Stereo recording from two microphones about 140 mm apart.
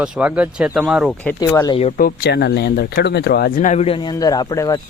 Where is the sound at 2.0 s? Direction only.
80° left.